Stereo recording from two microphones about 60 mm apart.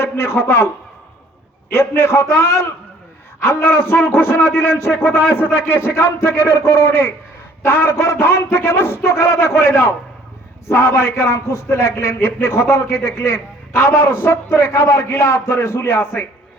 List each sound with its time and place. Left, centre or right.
0.0 s a man's voice: left
2.0 s a man's voice: left